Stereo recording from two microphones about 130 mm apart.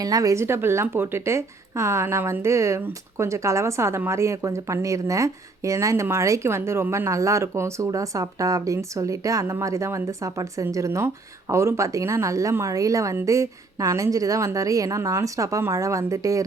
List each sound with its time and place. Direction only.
0.0 s speech: 30° right (ahead or behind)